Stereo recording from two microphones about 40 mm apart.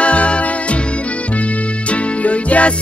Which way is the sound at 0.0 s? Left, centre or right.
Left.